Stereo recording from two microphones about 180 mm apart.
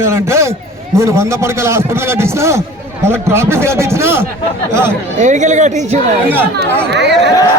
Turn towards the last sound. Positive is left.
turn(degrees=-70)  # may be behind; listen again after turning